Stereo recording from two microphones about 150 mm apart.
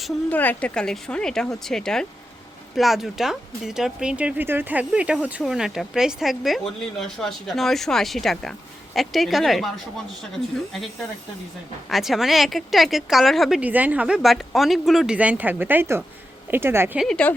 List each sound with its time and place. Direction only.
0.3 s speech: 10° left (ahead or behind)
11.9 s speech: centre (ahead or behind)
17.0 s speech: 5° left (ahead or behind)